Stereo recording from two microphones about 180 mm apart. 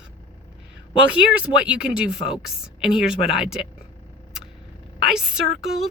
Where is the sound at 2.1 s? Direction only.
30° left (ahead or behind).